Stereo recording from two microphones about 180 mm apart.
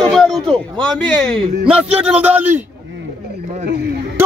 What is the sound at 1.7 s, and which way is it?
Speech, 5° right (ahead or behind).